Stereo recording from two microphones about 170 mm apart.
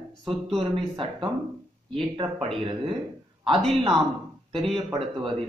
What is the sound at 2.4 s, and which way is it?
Speech, 30° right (ahead or behind).